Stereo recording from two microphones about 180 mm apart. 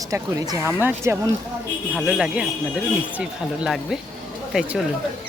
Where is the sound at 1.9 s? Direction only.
5° right (ahead or behind).